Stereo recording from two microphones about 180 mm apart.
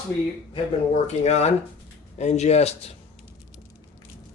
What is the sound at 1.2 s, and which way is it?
Speech, 35° left (ahead or behind).